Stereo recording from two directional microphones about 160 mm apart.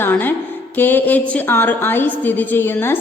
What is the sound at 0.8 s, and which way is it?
A woman's voice, 10° left (ahead or behind).